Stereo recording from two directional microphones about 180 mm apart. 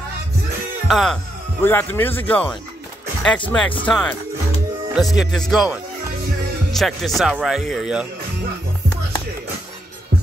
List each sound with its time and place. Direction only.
0.8 s music: centre (ahead or behind)
1.6 s speech: 10° left (ahead or behind); by 8.1 s 5° right (ahead or behind)